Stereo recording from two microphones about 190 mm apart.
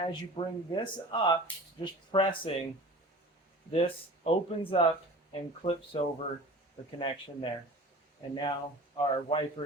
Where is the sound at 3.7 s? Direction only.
30° left (ahead or behind).